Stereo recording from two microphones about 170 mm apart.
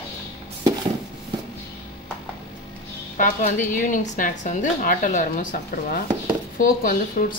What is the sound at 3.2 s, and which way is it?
Speech, 50° left (ahead or behind).